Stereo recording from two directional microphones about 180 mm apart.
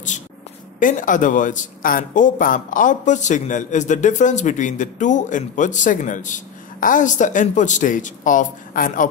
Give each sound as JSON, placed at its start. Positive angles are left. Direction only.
{"t": 0.7, "sound": "a man's voice", "side_deg": 45}